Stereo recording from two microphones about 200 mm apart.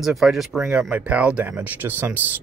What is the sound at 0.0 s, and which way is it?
Speech, centre (ahead or behind).